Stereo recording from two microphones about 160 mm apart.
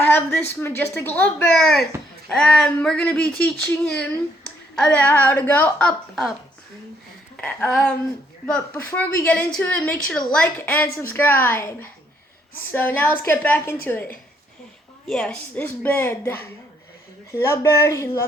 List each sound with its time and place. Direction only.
0.0 s a woman's voice: 15° left (ahead or behind)
1.5 s a woman's voice: centre (ahead or behind)
7.4 s a woman's voice: 5° left (ahead or behind)